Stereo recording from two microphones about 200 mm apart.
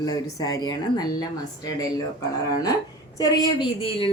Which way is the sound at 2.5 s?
20° left (ahead or behind).